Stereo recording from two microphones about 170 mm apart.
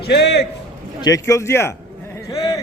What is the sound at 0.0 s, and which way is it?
Speech, 80° left.